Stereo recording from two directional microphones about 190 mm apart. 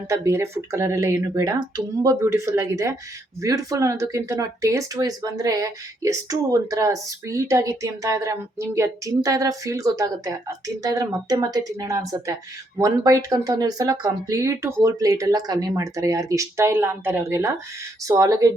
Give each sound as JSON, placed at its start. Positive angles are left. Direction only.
{"t": 0.1, "sound": "speech", "side_deg": -15}